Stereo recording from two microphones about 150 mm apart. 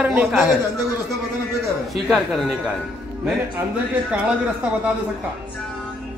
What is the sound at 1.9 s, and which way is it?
Speech, centre (ahead or behind).